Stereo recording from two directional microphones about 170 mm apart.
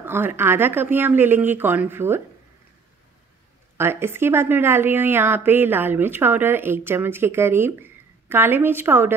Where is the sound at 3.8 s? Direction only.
15° right (ahead or behind).